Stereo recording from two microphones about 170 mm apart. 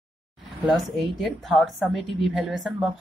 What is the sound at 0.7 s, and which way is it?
A woman's voice, centre (ahead or behind).